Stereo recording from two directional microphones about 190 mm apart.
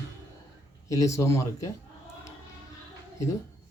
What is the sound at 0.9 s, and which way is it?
Speech, 15° left (ahead or behind).